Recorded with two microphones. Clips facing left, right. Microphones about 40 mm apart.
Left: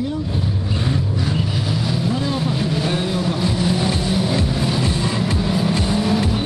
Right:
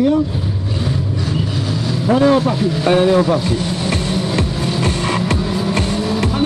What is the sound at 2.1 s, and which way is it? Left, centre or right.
Speech, right.